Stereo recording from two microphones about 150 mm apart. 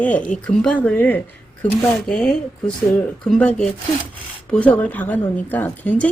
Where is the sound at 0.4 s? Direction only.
10° left (ahead or behind).